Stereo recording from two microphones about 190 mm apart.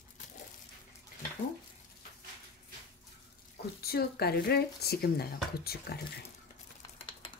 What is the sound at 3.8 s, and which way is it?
Speech, 55° left (ahead or behind).